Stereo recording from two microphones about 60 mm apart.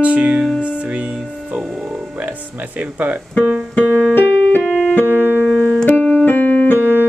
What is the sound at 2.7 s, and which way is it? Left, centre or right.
Speech, right.